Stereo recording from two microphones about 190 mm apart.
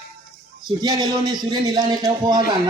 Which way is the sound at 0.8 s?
20° right (ahead or behind).